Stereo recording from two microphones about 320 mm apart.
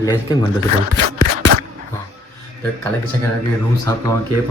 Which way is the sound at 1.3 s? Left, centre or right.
Right.